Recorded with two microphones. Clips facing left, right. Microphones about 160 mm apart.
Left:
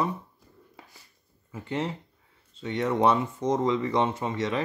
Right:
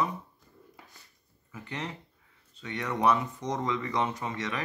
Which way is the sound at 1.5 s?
30° left (ahead or behind).